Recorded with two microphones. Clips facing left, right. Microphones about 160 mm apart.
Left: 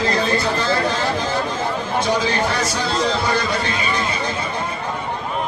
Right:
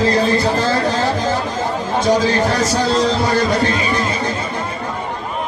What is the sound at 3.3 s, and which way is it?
Speech, 40° right (ahead or behind).